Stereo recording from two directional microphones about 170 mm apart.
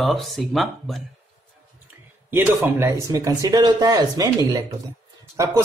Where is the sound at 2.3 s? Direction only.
15° right (ahead or behind).